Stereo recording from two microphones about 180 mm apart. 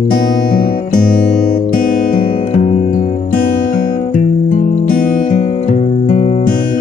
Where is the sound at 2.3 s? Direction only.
35° left (ahead or behind).